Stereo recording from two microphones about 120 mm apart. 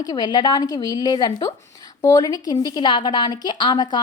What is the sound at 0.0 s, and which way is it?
A woman's voice, 35° left (ahead or behind).